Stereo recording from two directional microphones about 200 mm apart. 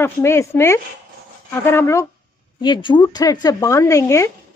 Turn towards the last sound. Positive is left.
turn(degrees=15)  # may be behind; listen again after turning